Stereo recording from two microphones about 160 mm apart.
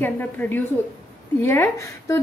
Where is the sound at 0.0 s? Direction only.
10° left (ahead or behind).